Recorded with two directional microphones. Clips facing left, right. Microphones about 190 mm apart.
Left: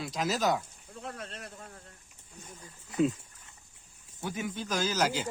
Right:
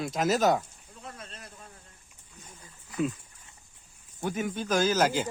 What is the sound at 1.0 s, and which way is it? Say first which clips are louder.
Speech: left 4 dB; 70° left (ahead or behind).